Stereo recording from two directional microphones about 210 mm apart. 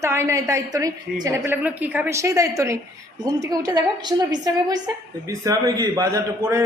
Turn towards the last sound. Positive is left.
turn(degrees=-15)  # may be behind; listen again after turning